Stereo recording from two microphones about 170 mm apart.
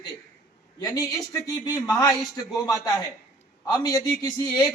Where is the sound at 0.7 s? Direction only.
20° left (ahead or behind).